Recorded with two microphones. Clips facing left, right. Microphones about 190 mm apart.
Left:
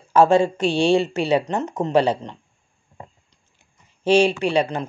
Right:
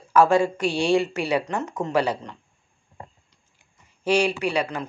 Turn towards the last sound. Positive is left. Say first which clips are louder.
# left 4 dB
turn(degrees=25)  # may be behind; listen again after turning